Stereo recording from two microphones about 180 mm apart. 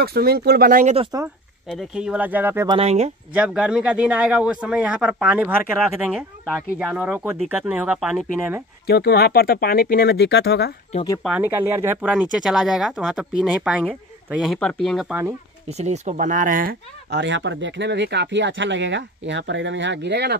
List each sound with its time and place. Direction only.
0.0 s speech: 60° right (ahead or behind)
1.7 s speech: 5° right (ahead or behind)
2.7 s speech: 35° right (ahead or behind)
3.3 s speech: 5° right (ahead or behind)
8.8 s speech: 60° left (ahead or behind)
11.2 s speech: 10° right (ahead or behind)
15.7 s speech: 40° right (ahead or behind); by 20.3 s 70° right (ahead or behind)